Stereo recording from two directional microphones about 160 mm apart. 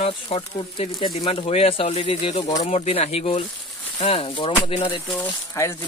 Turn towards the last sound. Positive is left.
turn(degrees=15)  # may be behind; listen again after turning